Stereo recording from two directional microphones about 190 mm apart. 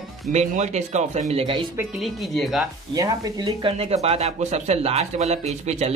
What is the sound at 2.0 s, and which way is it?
Speech, centre (ahead or behind).